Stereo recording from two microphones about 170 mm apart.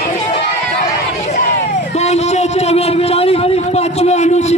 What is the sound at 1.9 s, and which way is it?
A man's voice, 40° left (ahead or behind).